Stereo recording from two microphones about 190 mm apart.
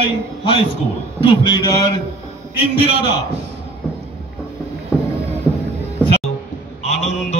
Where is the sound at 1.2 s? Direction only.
25° left (ahead or behind).